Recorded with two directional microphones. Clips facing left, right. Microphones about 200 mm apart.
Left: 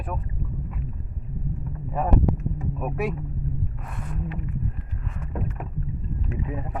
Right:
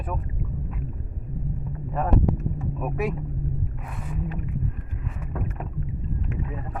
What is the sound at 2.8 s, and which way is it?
Speech, centre (ahead or behind).